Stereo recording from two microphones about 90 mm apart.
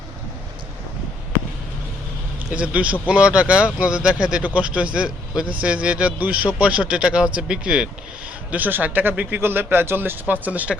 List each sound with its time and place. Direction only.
2.5 s speech: 15° right (ahead or behind)